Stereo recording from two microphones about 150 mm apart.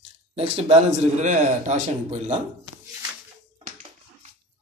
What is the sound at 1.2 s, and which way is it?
Speech, 55° right (ahead or behind).